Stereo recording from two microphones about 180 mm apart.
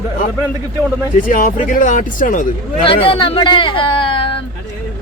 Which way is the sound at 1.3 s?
45° left (ahead or behind).